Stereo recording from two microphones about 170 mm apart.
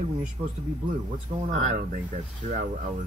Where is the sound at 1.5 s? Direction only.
50° right (ahead or behind).